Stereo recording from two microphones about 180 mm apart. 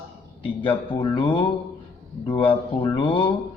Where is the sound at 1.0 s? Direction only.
25° left (ahead or behind).